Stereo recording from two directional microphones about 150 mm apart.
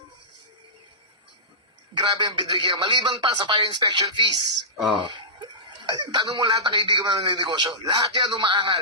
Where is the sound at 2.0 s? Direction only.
30° right (ahead or behind).